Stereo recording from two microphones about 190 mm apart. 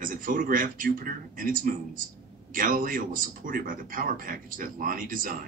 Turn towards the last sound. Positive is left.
turn(degrees=-45)  # may be behind; listen again after turning